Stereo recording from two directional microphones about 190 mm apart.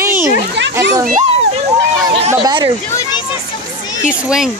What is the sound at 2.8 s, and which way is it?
Speech, 15° left (ahead or behind).